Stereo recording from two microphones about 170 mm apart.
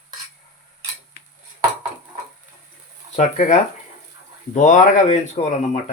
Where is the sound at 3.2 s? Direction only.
45° left (ahead or behind).